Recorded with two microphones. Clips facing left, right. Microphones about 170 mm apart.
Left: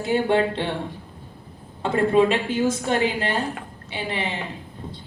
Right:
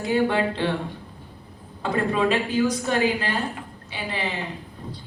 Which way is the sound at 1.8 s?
25° left (ahead or behind).